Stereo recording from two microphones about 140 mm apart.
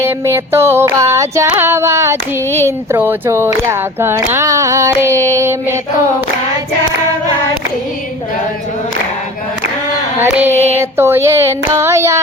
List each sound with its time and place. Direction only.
0.0 s female singing: 20° right (ahead or behind)
2.6 s speech: 15° right (ahead or behind)
10.2 s female singing: 15° right (ahead or behind)
10.8 s speech: 15° right (ahead or behind)